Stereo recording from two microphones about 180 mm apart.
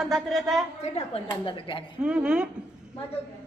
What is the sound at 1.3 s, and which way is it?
Speech, 30° left (ahead or behind).